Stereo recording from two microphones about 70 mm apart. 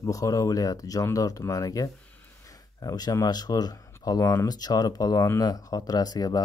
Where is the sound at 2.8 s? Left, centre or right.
Left.